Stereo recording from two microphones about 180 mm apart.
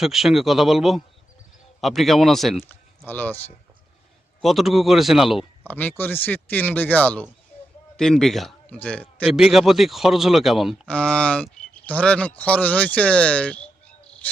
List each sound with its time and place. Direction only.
0.0 s speech: centre (ahead or behind)
4.4 s speech: centre (ahead or behind)
5.6 s a man's voice: 10° left (ahead or behind)